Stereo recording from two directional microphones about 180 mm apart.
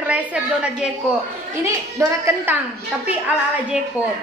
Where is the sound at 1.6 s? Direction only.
15° right (ahead or behind).